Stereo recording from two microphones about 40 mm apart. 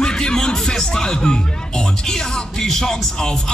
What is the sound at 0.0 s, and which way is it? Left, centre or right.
Speech, centre.